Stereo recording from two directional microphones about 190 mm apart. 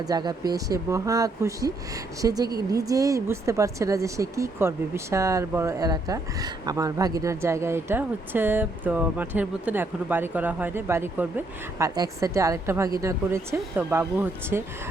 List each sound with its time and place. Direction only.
0.0 s speech: 20° right (ahead or behind)